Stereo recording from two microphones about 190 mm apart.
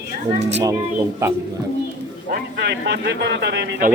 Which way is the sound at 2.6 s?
65° right (ahead or behind).